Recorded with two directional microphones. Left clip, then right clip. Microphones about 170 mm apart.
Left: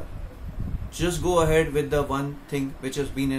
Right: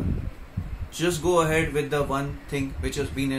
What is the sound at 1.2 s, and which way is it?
Speech, 5° left (ahead or behind).